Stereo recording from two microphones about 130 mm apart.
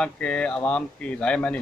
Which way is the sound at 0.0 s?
10° left (ahead or behind).